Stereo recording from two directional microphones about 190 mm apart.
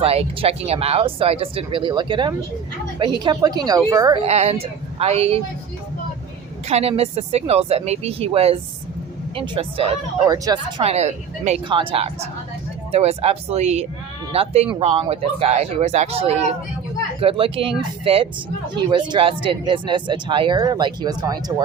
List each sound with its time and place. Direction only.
0.0 s speech: 30° right (ahead or behind)
4.2 s speech: 35° right (ahead or behind)
6.7 s speech: 35° right (ahead or behind)
10.2 s speech: 20° right (ahead or behind)
10.8 s speech: 35° right (ahead or behind); by 21.5 s 20° right (ahead or behind)